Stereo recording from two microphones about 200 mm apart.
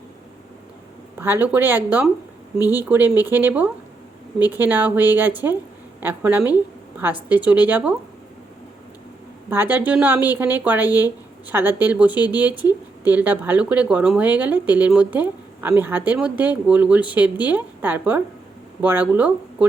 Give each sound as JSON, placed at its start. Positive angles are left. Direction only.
{"t": 1.2, "sound": "a woman's voice", "side_deg": -10}
{"t": 9.5, "sound": "speech", "side_deg": -10}
{"t": 10.8, "sound": "speech", "side_deg": 20}
{"t": 11.4, "sound": "speech", "side_deg": -10}
{"t": 12.1, "sound": "speech", "side_deg": 20}
{"t": 13.1, "sound": "speech", "side_deg": -10}